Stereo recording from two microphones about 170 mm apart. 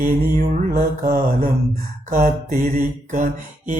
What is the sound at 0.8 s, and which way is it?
Mantra, 60° right (ahead or behind).